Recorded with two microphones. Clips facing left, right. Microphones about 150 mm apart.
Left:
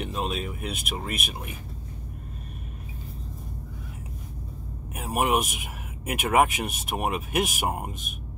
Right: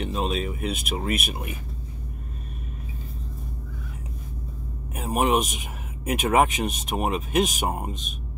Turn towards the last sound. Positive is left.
turn(degrees=10)  # may be behind; listen again after turning